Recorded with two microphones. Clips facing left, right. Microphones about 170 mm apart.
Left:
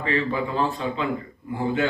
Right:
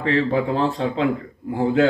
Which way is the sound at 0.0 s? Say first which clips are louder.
Right 5 dB; 70° right (ahead or behind).